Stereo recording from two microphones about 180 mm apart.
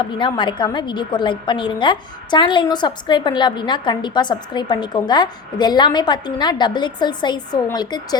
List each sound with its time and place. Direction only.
0.0 s a woman's voice: 25° left (ahead or behind)